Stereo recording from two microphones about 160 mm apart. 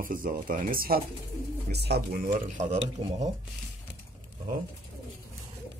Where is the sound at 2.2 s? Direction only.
50° right (ahead or behind).